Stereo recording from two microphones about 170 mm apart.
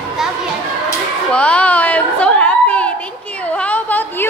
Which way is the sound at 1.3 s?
5° left (ahead or behind).